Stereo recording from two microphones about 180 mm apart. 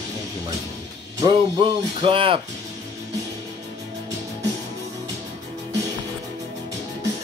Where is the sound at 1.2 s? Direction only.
30° right (ahead or behind).